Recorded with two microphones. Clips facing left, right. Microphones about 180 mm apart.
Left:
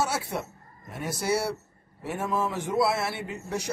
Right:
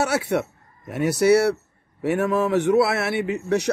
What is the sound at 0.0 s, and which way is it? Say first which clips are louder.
A man's voice: right 7 dB; 70° right (ahead or behind).